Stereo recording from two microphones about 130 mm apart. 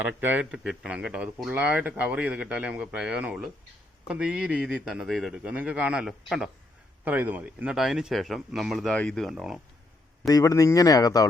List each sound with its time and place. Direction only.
0.0 s speech: 15° right (ahead or behind)
5.4 s speech: 10° right (ahead or behind)
7.0 s speech: 15° right (ahead or behind)
10.2 s speech: 25° left (ahead or behind)